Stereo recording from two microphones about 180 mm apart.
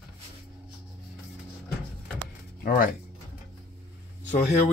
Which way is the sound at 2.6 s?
50° left (ahead or behind).